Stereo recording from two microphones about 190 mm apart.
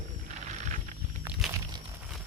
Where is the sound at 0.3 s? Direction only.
40° right (ahead or behind).